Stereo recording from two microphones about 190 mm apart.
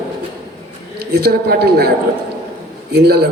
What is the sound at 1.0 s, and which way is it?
A man's voice, 55° right (ahead or behind).